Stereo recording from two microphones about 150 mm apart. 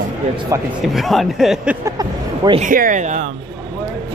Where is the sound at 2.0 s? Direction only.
30° right (ahead or behind).